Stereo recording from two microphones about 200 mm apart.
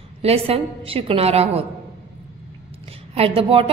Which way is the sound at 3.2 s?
30° right (ahead or behind).